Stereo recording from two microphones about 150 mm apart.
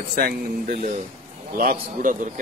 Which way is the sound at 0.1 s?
70° right (ahead or behind).